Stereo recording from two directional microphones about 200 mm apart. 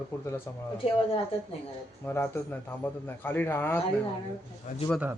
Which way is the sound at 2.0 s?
10° left (ahead or behind).